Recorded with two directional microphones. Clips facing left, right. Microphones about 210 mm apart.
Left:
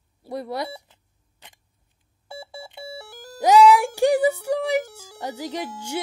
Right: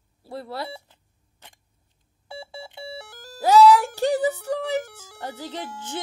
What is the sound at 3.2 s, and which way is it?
Music, 15° left (ahead or behind).